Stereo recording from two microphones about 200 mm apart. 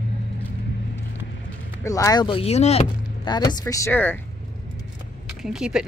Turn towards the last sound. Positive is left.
turn(degrees=-5)  # may be behind; listen again after turning